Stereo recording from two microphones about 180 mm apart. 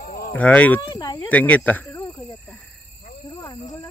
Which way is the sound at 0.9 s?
25° left (ahead or behind).